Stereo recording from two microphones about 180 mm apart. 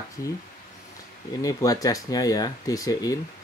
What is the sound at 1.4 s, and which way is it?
Speech, 20° left (ahead or behind).